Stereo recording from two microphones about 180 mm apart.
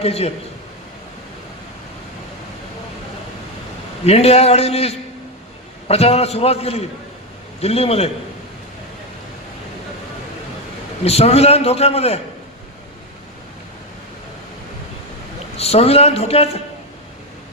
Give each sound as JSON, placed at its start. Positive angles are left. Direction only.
{"t": 0.0, "sound": "a man's voice", "side_deg": 35}
{"t": 4.0, "sound": "a man's voice", "side_deg": 35}
{"t": 11.0, "sound": "a man's voice", "side_deg": 35}
{"t": 15.5, "sound": "a man's voice", "side_deg": 35}